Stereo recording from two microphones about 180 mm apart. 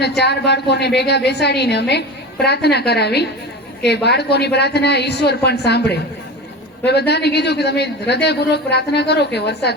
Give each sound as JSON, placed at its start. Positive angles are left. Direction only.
{"t": 0.0, "sound": "a woman's voice", "side_deg": 70}